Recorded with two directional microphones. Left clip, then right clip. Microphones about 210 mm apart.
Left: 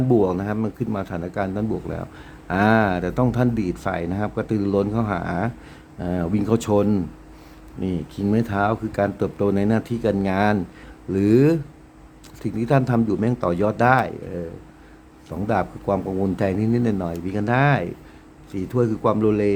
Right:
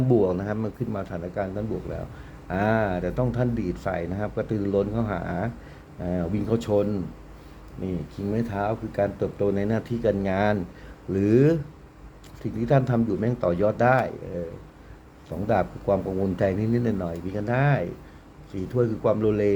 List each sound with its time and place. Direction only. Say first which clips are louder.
0.1 s speech: left 2 dB; 10° left (ahead or behind)
8.1 s speech: left 6 dB; 25° left (ahead or behind)
15.3 s speech: left 1 dB; 10° left (ahead or behind)